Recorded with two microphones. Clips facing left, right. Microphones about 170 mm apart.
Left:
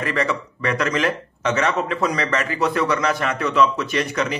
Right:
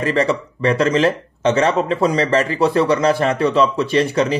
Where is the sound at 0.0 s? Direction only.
30° right (ahead or behind).